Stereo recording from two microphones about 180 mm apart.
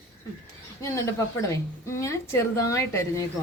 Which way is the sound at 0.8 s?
15° left (ahead or behind).